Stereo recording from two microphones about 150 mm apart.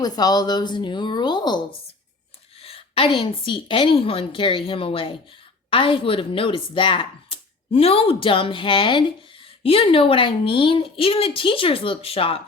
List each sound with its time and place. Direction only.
0.0 s a woman's voice: 25° left (ahead or behind)
2.6 s speech: 40° left (ahead or behind)